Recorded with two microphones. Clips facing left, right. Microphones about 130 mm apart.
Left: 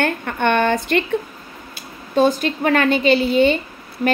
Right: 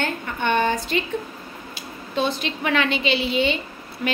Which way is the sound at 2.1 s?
45° left (ahead or behind).